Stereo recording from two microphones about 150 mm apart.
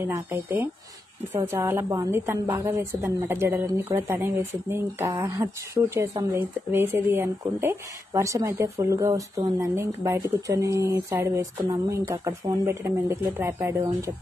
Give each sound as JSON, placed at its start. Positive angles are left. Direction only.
{"t": 0.0, "sound": "a woman's voice", "side_deg": -15}